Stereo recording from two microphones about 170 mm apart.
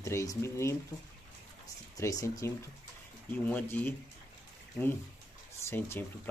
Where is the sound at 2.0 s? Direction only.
20° left (ahead or behind).